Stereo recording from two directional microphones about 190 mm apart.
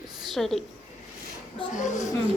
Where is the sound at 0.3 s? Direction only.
Centre (ahead or behind).